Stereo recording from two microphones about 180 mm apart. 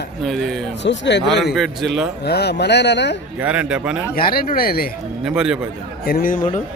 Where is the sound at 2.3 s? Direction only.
65° left (ahead or behind).